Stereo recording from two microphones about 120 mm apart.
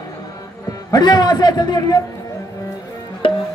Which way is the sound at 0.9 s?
35° left (ahead or behind).